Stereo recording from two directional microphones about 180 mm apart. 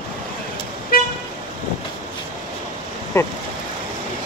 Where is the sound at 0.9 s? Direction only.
55° left (ahead or behind).